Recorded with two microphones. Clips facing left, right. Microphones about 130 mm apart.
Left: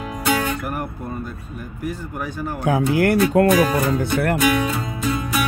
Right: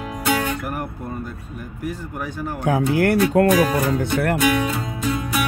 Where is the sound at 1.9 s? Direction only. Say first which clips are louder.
Left 1 dB; 5° left (ahead or behind).